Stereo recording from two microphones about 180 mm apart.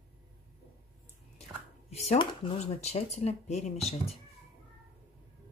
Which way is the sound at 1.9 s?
35° left (ahead or behind).